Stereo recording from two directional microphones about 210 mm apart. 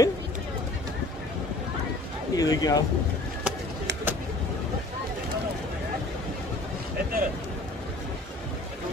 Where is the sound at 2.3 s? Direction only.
20° left (ahead or behind).